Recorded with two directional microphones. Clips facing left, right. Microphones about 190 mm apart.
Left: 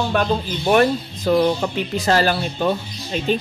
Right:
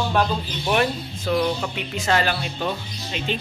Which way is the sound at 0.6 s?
40° left (ahead or behind).